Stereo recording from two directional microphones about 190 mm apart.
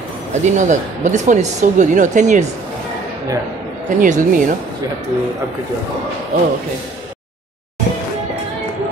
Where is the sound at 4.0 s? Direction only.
45° right (ahead or behind).